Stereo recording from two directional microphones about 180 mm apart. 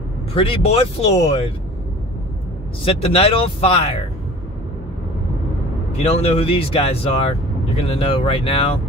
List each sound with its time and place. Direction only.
0.3 s speech: 30° left (ahead or behind)
2.8 s speech: 30° left (ahead or behind)
5.9 s speech: 35° left (ahead or behind)